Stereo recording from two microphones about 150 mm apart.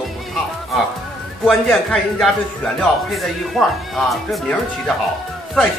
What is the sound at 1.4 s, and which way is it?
Speech, centre (ahead or behind).